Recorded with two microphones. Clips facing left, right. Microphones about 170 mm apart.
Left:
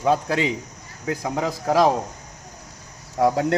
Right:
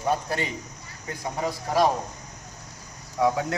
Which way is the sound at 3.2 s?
60° left (ahead or behind).